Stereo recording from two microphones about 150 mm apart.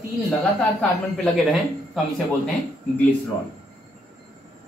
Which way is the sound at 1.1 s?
Centre (ahead or behind).